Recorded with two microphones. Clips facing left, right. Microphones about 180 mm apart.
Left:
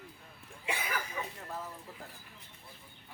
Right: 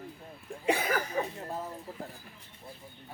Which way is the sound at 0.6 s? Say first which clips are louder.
Right 8 dB; 40° right (ahead or behind).